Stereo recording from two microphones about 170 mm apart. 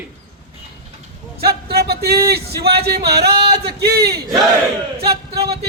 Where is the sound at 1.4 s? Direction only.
70° right (ahead or behind).